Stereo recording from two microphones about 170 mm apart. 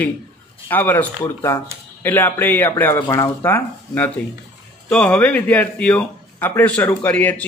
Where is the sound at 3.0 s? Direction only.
25° left (ahead or behind).